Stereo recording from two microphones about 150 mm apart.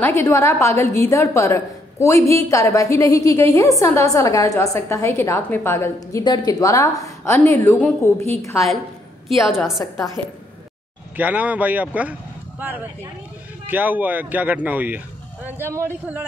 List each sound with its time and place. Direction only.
0.0 s a woman's voice: 15° left (ahead or behind)
9.3 s a woman's voice: centre (ahead or behind)
11.1 s speech: 10° right (ahead or behind)